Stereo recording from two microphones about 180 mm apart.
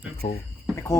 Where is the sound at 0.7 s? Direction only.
15° left (ahead or behind).